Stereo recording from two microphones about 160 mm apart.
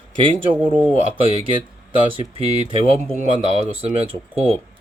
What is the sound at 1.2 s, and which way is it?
Speech, 35° right (ahead or behind).